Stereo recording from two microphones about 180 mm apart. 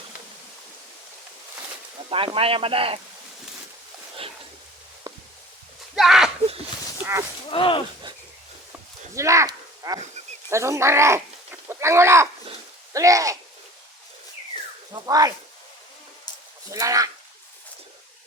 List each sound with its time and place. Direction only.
2.0 s speech: 30° right (ahead or behind)
5.1 s a sound: 20° right (ahead or behind)
6.0 s a sound: centre (ahead or behind)
7.0 s speech: 15° right (ahead or behind)
7.5 s speech: 30° left (ahead or behind)
9.1 s speech: 15° right (ahead or behind)
12.9 s a sound: 20° right (ahead or behind)
14.9 s speech: 20° right (ahead or behind)
16.7 s speech: 20° right (ahead or behind)